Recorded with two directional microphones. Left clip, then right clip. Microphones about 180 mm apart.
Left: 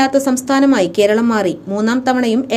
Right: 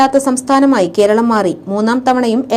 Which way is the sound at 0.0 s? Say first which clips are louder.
Right 3 dB; 5° right (ahead or behind).